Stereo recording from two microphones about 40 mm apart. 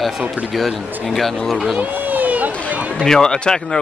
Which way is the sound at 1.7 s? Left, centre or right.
Right.